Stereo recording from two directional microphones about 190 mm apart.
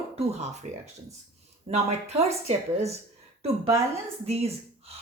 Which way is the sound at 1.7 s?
35° right (ahead or behind).